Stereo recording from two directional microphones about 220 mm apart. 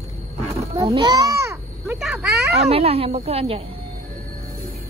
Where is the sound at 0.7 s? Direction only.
20° right (ahead or behind).